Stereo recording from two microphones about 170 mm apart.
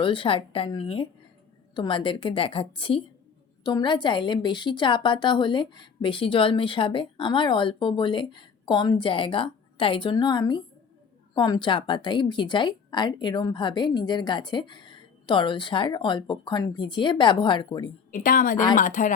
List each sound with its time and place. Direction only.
0.0 s a woman's voice: 30° left (ahead or behind)
18.1 s a woman's voice: 55° left (ahead or behind)